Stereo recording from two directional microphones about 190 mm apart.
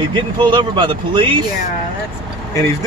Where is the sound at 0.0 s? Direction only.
25° right (ahead or behind).